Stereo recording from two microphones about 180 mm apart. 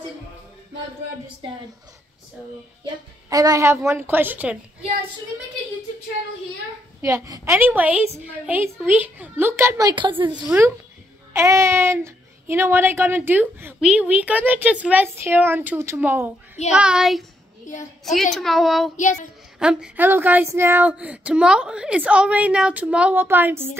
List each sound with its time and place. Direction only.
2.8 s a child's voice: 20° right (ahead or behind)
7.0 s a child's voice: 15° right (ahead or behind)
11.3 s a child's voice: 15° right (ahead or behind)
17.6 s a woman's voice: 40° left (ahead or behind)
18.3 s a child's voice: centre (ahead or behind)